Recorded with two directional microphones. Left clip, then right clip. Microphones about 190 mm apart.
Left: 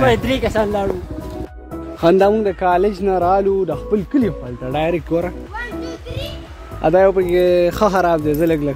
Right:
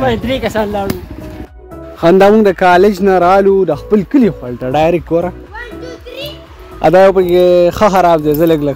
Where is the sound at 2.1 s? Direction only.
35° right (ahead or behind).